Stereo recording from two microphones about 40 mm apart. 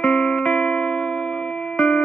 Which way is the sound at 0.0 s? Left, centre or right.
Centre.